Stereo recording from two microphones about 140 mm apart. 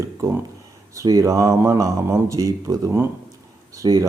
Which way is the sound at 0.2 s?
20° right (ahead or behind).